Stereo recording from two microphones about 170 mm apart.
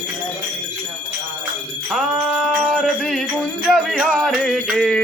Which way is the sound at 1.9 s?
Centre (ahead or behind).